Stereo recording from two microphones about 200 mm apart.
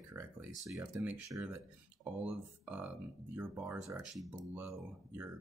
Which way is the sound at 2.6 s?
10° right (ahead or behind).